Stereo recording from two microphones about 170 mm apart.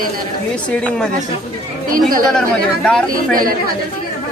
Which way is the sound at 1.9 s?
55° right (ahead or behind).